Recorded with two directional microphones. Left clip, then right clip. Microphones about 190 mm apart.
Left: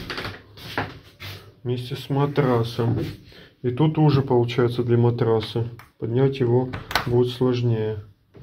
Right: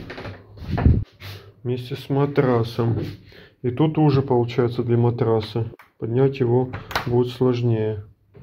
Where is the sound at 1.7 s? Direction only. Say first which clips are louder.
Right 2 dB; 20° right (ahead or behind).